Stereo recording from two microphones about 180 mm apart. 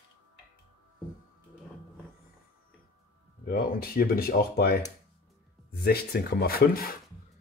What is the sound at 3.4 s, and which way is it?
Speech, 55° left (ahead or behind).